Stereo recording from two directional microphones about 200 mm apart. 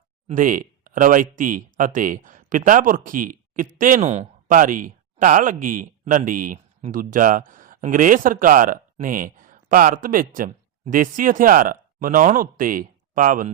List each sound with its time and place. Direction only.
0.3 s speech: 40° right (ahead or behind)